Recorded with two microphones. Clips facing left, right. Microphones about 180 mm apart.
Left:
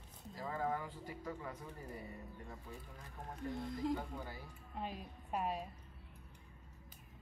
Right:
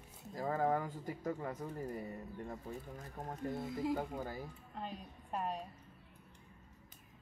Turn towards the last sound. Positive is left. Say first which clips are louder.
# even
turn(degrees=5)  # may be behind; listen again after turning